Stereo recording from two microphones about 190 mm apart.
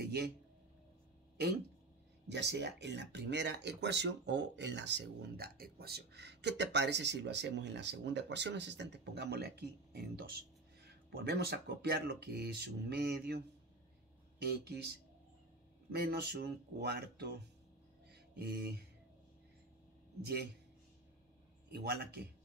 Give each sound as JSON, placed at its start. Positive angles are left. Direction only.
{"t": 0.0, "sound": "a sound", "side_deg": -55}
{"t": 2.2, "sound": "speech", "side_deg": -65}
{"t": 14.4, "sound": "speech", "side_deg": -60}
{"t": 15.9, "sound": "speech", "side_deg": -55}
{"t": 21.7, "sound": "speech", "side_deg": -60}